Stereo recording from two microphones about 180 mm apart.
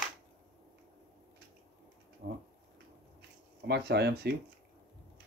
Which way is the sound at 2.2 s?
65° right (ahead or behind).